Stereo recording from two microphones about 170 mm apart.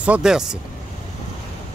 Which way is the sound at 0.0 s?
5° right (ahead or behind).